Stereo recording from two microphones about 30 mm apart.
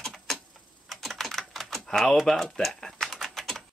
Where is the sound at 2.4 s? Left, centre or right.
Centre.